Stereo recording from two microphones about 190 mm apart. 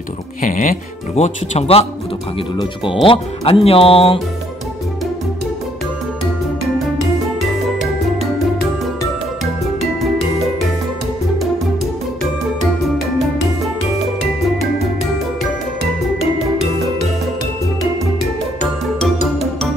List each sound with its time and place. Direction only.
0.4 s speech: 45° left (ahead or behind)